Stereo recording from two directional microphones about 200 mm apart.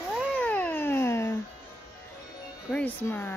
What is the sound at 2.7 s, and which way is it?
Speech, 5° left (ahead or behind).